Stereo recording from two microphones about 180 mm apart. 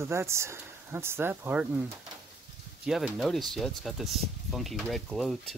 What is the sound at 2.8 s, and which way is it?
Speech, 5° right (ahead or behind).